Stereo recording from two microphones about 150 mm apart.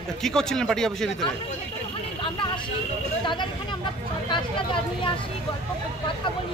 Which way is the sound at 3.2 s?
30° left (ahead or behind).